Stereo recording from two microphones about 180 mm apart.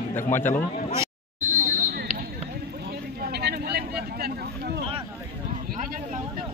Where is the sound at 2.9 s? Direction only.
60° right (ahead or behind).